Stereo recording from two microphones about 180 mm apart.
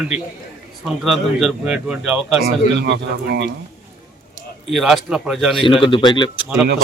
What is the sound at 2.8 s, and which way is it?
Speech, 70° right (ahead or behind).